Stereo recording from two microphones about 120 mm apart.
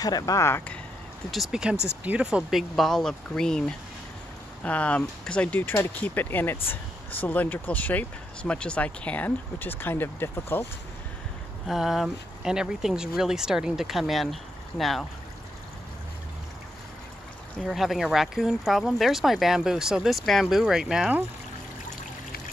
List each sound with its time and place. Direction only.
0.0 s speech: 30° left (ahead or behind)
1.3 s speech: centre (ahead or behind); by 10.6 s 20° left (ahead or behind)
11.6 s speech: centre (ahead or behind)
17.6 s speech: centre (ahead or behind)